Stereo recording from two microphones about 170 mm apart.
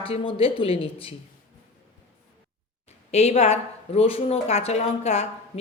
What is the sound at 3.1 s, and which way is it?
Speech, 40° left (ahead or behind).